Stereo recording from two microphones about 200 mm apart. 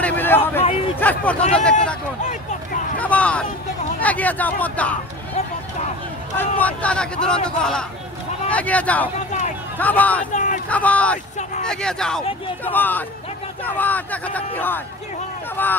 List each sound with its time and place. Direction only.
0.0 s a sound: 10° left (ahead or behind)
0.9 s speech: 10° left (ahead or behind)
3.0 s speech: 5° left (ahead or behind)
6.3 s speech: 5° left (ahead or behind)
10.3 s a sound: 40° left (ahead or behind)
10.7 s speech: 5° left (ahead or behind)